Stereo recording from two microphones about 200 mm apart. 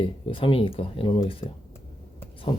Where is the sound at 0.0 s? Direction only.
25° left (ahead or behind).